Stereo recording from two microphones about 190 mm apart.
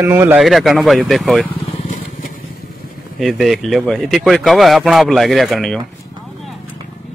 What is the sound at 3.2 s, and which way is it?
A man's voice, centre (ahead or behind).